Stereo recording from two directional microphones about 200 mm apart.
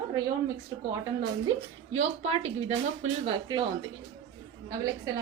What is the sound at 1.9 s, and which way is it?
Speech, 30° right (ahead or behind).